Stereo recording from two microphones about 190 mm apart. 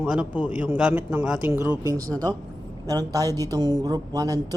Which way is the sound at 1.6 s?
20° right (ahead or behind).